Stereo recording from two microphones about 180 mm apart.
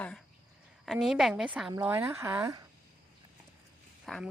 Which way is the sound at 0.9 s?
Centre (ahead or behind).